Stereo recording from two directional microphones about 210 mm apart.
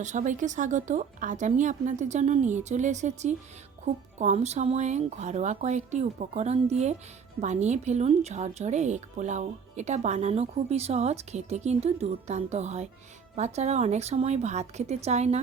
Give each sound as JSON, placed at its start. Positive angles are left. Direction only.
{"t": 0.0, "sound": "a woman's voice", "side_deg": -35}